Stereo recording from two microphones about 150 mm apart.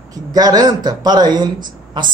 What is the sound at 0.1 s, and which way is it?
A man's voice, 25° right (ahead or behind).